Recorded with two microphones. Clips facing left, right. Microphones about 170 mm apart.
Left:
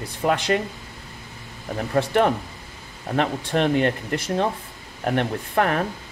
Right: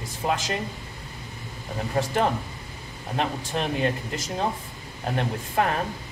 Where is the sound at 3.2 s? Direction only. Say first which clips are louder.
Left 6 dB; 65° left (ahead or behind).